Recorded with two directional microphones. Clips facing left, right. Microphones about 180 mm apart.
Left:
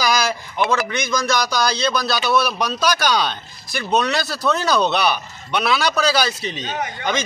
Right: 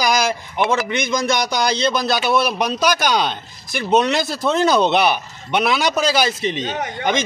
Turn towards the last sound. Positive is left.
turn(degrees=-20)  # may be behind; listen again after turning